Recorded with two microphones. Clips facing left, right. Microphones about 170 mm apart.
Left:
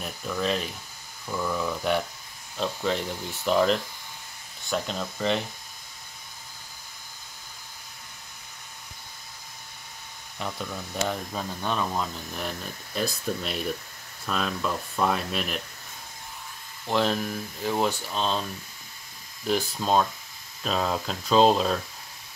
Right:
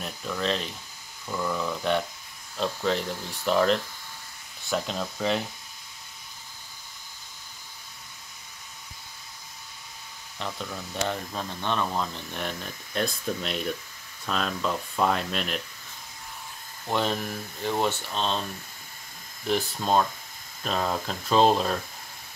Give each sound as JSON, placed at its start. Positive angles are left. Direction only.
{"t": 0.0, "sound": "a sound", "side_deg": 5}
{"t": 1.3, "sound": "speech", "side_deg": 5}
{"t": 10.4, "sound": "speech", "side_deg": 5}
{"t": 16.8, "sound": "speech", "side_deg": 0}
{"t": 19.4, "sound": "speech", "side_deg": 0}